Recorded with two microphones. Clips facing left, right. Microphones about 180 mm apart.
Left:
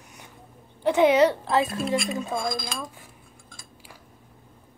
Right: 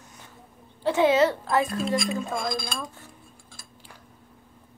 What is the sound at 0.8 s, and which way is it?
Speech, 15° left (ahead or behind).